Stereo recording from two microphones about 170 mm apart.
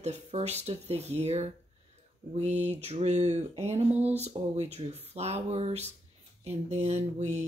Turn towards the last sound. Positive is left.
turn(degrees=-45)  # may be behind; listen again after turning